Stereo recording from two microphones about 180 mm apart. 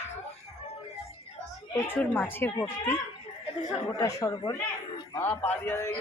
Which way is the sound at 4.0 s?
20° left (ahead or behind).